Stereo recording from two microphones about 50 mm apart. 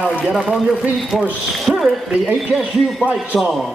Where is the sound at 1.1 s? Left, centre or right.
Centre.